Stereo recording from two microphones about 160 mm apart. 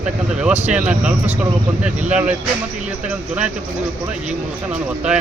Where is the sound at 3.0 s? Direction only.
10° right (ahead or behind).